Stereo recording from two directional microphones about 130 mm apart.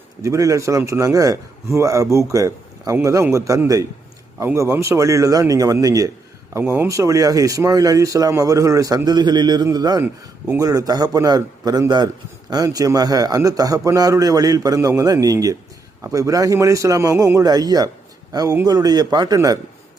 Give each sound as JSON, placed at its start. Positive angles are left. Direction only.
{"t": 0.2, "sound": "speech", "side_deg": -25}
{"t": 6.5, "sound": "a man's voice", "side_deg": -15}